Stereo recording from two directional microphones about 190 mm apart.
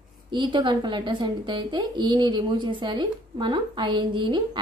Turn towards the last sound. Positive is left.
turn(degrees=-25)  # may be behind; listen again after turning